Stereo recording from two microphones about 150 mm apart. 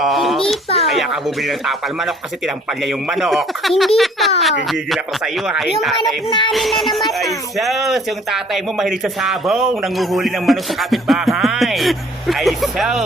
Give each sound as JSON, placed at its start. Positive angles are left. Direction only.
{"t": 0.0, "sound": "a sound", "side_deg": 0}
{"t": 0.4, "sound": "a child's voice", "side_deg": 40}
{"t": 0.9, "sound": "speech", "side_deg": 0}
{"t": 6.0, "sound": "speech", "side_deg": 30}
{"t": 6.5, "sound": "speech", "side_deg": 0}